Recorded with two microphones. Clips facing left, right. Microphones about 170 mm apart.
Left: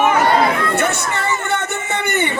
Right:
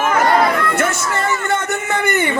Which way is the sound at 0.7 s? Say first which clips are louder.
Even; 65° left (ahead or behind).